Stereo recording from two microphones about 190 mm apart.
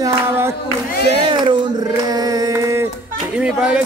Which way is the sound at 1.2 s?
25° right (ahead or behind).